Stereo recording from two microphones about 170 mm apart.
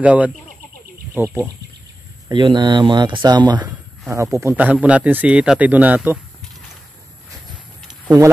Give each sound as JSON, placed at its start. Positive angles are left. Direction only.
{"t": 0.0, "sound": "speech", "side_deg": -10}
{"t": 2.2, "sound": "speech", "side_deg": -25}